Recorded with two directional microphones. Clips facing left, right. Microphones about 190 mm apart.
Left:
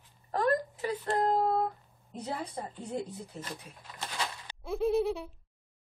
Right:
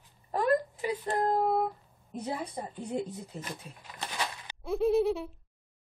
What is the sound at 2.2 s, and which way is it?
A woman's voice, 15° right (ahead or behind).